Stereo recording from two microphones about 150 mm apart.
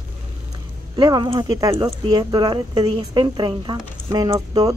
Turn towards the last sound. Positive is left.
turn(degrees=-25)  # may be behind; listen again after turning